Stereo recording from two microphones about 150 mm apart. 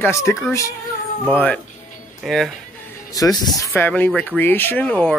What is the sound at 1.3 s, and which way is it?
Speech, 10° left (ahead or behind).